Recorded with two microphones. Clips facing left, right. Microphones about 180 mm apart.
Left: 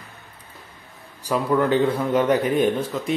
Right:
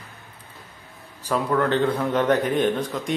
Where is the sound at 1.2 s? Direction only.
10° left (ahead or behind).